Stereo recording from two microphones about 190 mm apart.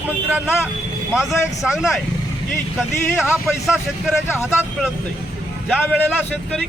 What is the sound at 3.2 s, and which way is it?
Speech, 5° right (ahead or behind).